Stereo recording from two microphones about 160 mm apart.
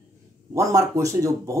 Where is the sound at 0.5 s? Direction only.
20° right (ahead or behind).